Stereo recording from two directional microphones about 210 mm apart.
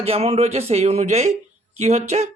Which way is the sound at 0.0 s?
30° right (ahead or behind).